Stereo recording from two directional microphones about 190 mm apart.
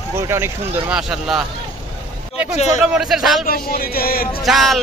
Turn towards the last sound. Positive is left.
turn(degrees=0)  # may be behind; listen again after turning